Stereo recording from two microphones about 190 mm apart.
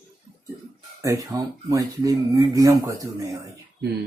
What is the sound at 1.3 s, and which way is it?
Speech, 15° right (ahead or behind).